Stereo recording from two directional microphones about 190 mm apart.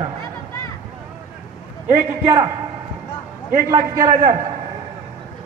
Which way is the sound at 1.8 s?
30° right (ahead or behind).